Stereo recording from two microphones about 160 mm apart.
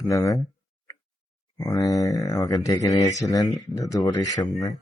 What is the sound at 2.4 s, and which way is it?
Speech, 25° left (ahead or behind).